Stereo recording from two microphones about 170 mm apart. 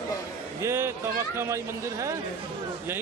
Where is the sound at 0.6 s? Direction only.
15° right (ahead or behind).